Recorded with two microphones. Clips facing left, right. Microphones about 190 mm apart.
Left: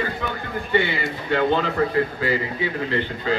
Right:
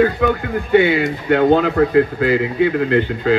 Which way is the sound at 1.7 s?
60° right (ahead or behind).